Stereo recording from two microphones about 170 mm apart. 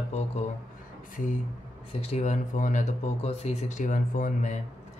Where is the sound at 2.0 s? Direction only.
40° left (ahead or behind).